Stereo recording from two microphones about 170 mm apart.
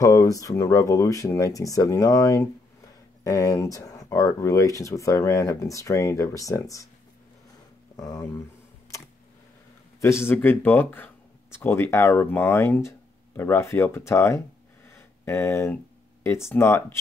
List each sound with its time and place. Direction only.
0.0 s speech: 20° left (ahead or behind)
7.9 s speech: 20° left (ahead or behind)
9.9 s speech: 15° left (ahead or behind)
14.9 s a sound: 15° left (ahead or behind)
16.3 s speech: 15° left (ahead or behind)